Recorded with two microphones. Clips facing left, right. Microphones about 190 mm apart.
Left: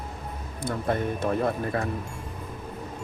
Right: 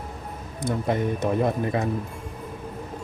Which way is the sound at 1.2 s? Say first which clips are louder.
Right 2 dB; 20° right (ahead or behind).